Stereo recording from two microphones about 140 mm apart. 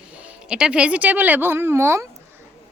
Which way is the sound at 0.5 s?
5° right (ahead or behind).